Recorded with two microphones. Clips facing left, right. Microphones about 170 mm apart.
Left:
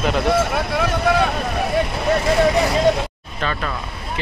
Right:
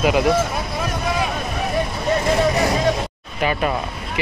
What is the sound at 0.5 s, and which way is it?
Vehicle, 65° left (ahead or behind).